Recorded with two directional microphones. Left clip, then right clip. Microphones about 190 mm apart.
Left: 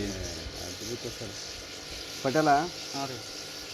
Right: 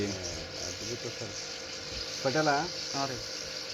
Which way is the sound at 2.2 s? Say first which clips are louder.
Left 4 dB; 35° left (ahead or behind).